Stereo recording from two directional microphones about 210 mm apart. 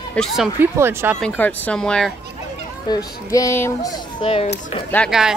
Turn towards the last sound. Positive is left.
turn(degrees=0)  # may be behind; listen again after turning